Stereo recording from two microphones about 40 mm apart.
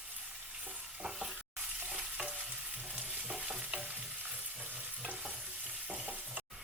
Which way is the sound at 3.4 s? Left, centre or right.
Centre.